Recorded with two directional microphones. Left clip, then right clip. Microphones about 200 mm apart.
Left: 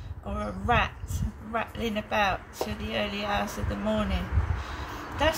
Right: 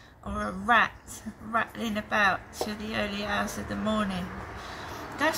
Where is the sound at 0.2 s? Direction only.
5° left (ahead or behind).